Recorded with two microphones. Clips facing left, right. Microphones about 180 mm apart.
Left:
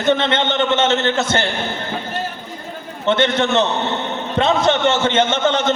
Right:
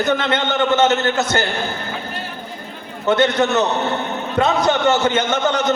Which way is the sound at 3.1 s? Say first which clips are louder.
Right 1 dB; 25° left (ahead or behind).